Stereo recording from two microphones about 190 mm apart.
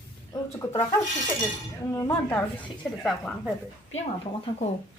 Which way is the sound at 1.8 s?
15° left (ahead or behind).